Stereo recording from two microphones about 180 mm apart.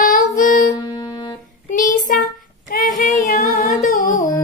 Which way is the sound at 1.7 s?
50° left (ahead or behind).